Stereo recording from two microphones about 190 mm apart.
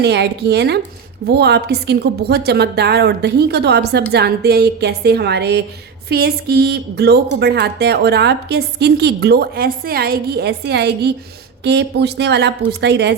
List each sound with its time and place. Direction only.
0.0 s a woman's voice: 60° right (ahead or behind)